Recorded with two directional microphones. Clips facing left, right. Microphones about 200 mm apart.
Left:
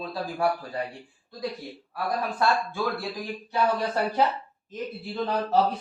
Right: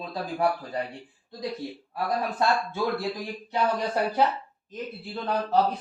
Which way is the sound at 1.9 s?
25° right (ahead or behind).